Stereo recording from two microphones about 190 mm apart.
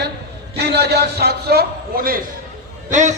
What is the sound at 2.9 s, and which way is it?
Speech, 40° right (ahead or behind).